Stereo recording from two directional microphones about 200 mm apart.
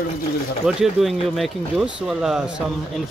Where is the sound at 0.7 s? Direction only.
Centre (ahead or behind).